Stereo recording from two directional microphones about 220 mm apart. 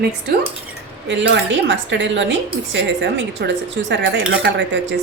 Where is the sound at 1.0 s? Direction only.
55° right (ahead or behind).